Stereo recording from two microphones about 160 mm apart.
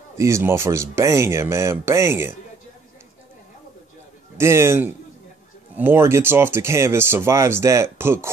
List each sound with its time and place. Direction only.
0.2 s speech: 15° right (ahead or behind)
4.4 s speech: 15° right (ahead or behind)